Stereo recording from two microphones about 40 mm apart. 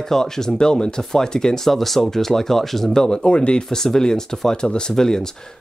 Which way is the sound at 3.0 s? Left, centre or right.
Left.